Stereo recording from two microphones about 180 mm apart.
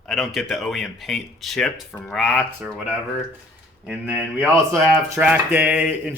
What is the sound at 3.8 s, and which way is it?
Speech, 5° right (ahead or behind).